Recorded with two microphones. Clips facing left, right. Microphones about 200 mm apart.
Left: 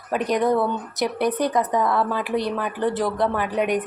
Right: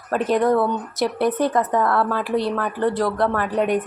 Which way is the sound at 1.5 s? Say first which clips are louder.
Right 1 dB; 15° left (ahead or behind).